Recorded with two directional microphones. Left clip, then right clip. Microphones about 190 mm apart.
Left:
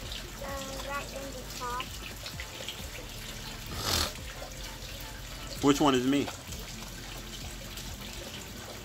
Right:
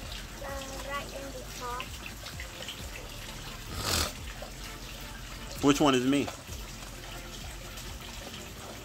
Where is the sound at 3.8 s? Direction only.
10° right (ahead or behind).